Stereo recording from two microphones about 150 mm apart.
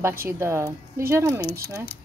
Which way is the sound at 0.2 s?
15° right (ahead or behind).